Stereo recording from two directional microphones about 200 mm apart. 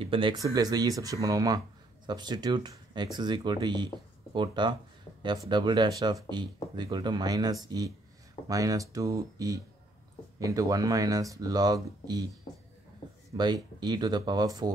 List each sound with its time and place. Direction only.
0.0 s speech: 25° right (ahead or behind)
13.4 s speech: 20° right (ahead or behind)